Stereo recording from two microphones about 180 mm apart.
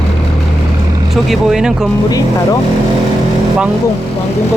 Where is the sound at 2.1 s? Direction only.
20° left (ahead or behind).